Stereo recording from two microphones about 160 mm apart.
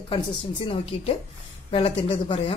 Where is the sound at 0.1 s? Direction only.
35° left (ahead or behind).